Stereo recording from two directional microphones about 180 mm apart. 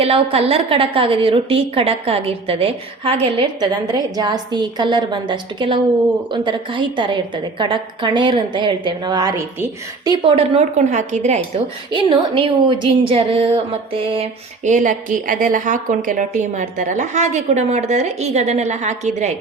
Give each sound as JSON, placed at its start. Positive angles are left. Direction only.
{"t": 0.0, "sound": "a woman's voice", "side_deg": -30}
{"t": 10.2, "sound": "a woman's voice", "side_deg": -30}
{"t": 11.9, "sound": "a woman's voice", "side_deg": -25}